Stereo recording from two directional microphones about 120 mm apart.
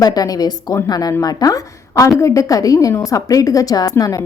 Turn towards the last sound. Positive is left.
turn(degrees=30)  # may be behind; listen again after turning